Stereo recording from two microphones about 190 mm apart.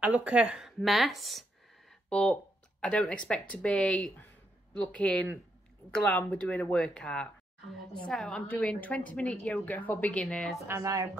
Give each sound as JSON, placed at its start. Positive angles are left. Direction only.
{"t": 0.0, "sound": "a woman's voice", "side_deg": -5}
{"t": 10.7, "sound": "speech", "side_deg": -15}